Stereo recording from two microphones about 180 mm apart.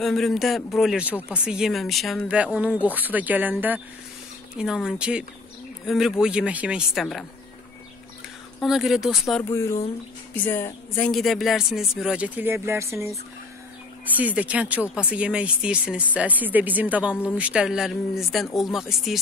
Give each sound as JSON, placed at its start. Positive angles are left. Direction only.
{"t": 0.0, "sound": "speech", "side_deg": 0}
{"t": 8.5, "sound": "speech", "side_deg": 0}
{"t": 9.4, "sound": "speech", "side_deg": 15}
{"t": 14.1, "sound": "speech", "side_deg": -10}